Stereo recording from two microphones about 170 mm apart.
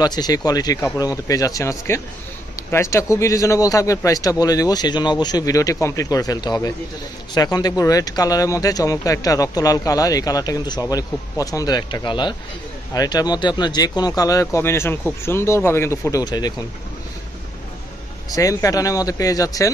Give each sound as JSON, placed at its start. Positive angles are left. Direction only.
{"t": 0.0, "sound": "speech", "side_deg": 25}
{"t": 18.3, "sound": "speech", "side_deg": 20}